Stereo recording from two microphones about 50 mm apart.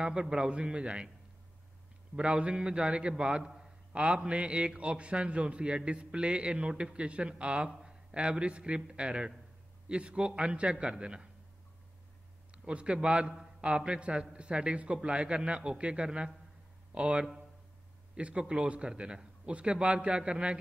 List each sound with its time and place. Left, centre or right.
0.0 s a man's voice: centre
2.1 s a man's voice: right
12.4 s a man's voice: right